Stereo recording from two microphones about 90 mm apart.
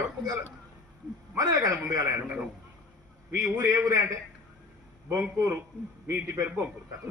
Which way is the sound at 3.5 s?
40° right (ahead or behind).